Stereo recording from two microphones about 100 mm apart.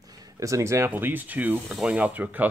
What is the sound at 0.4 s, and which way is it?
Speech, 30° right (ahead or behind).